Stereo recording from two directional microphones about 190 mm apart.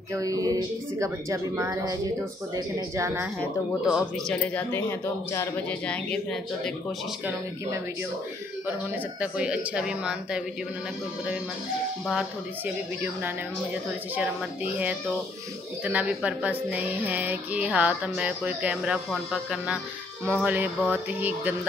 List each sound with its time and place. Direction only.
0.1 s speech: 20° right (ahead or behind)
3.8 s speech: centre (ahead or behind)
9.2 s speech: 5° right (ahead or behind)
14.1 s speech: 10° right (ahead or behind)
20.3 s speech: 10° right (ahead or behind)